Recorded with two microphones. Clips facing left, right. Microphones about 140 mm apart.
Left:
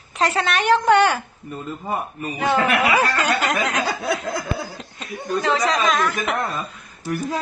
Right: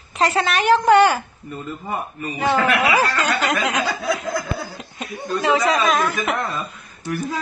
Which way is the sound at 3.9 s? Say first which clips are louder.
Right 1 dB; 65° left (ahead or behind).